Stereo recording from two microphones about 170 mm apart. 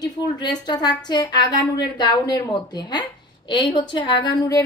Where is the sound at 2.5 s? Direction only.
25° left (ahead or behind).